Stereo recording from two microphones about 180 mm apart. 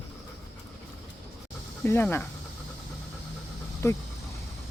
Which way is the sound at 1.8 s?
15° left (ahead or behind).